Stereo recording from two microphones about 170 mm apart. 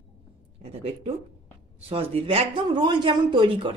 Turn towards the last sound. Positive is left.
turn(degrees=-30)  # may be behind; listen again after turning